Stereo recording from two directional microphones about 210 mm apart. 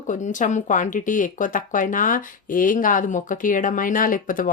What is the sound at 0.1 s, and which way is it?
Speech, 35° left (ahead or behind).